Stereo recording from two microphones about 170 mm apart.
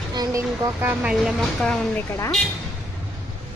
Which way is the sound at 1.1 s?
Centre (ahead or behind).